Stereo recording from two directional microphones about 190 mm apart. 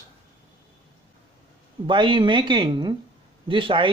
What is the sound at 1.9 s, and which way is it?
Speech, 25° right (ahead or behind).